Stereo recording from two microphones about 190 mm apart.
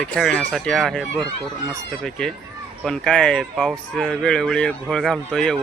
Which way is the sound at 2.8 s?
5° left (ahead or behind).